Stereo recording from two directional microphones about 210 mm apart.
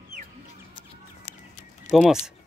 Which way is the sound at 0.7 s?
30° left (ahead or behind).